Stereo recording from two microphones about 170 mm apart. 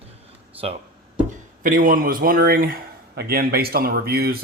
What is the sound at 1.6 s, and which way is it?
A man's voice, 55° right (ahead or behind).